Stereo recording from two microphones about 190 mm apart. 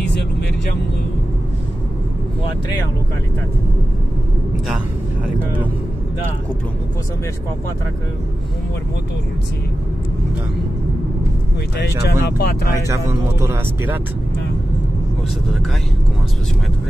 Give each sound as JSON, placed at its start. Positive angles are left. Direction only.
{"t": 0.0, "sound": "vehicle", "side_deg": 60}
{"t": 5.2, "sound": "speech", "side_deg": -10}
{"t": 11.8, "sound": "speech", "side_deg": 60}
{"t": 12.8, "sound": "speech", "side_deg": -15}